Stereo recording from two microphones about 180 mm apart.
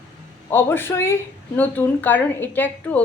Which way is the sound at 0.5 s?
10° left (ahead or behind).